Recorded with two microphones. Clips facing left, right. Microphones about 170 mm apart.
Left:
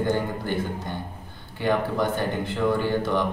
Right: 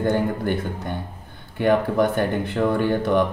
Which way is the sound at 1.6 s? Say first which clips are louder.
Right 5 dB; 55° right (ahead or behind).